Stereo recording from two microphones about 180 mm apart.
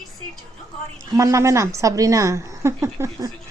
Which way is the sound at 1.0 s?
20° right (ahead or behind).